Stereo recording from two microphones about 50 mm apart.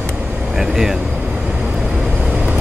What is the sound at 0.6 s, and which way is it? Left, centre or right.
Speech, centre.